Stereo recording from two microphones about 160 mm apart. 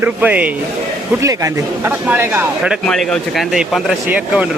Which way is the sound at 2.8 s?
5° left (ahead or behind).